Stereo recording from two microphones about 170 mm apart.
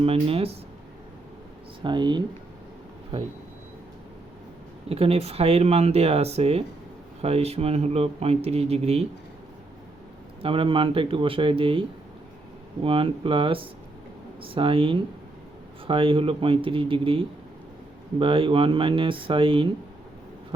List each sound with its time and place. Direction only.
0.0 s speech: 35° right (ahead or behind)
1.8 s speech: 25° right (ahead or behind)
4.9 s speech: 35° right (ahead or behind)
10.4 s speech: 30° right (ahead or behind)